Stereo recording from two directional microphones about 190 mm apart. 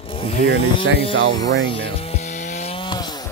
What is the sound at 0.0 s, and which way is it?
Speech, 30° left (ahead or behind).